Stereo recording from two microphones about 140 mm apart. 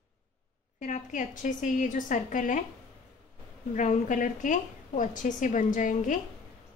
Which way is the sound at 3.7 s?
60° left (ahead or behind).